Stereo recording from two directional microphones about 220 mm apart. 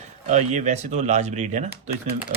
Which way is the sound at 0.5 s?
30° right (ahead or behind).